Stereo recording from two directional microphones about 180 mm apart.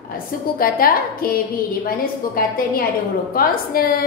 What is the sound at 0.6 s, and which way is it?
A woman's voice, 55° left (ahead or behind).